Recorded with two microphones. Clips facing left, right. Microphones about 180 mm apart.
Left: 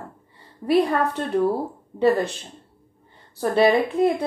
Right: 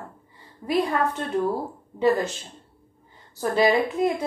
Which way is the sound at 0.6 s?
35° left (ahead or behind).